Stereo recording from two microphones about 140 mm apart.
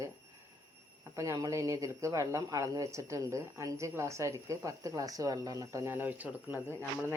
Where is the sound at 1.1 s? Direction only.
20° right (ahead or behind).